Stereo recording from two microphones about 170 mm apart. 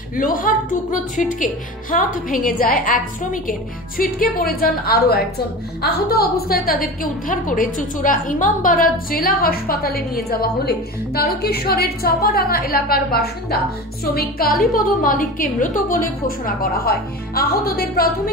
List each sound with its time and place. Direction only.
0.1 s a woman's voice: 55° left (ahead or behind)
4.0 s a woman's voice: 60° left (ahead or behind)